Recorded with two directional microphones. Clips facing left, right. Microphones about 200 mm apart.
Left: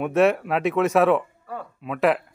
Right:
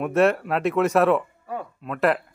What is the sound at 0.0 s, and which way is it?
Speech, centre (ahead or behind).